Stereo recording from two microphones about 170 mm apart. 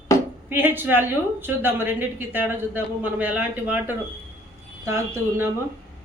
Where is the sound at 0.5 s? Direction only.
10° right (ahead or behind).